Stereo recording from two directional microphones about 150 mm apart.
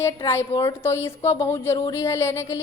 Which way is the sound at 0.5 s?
20° left (ahead or behind).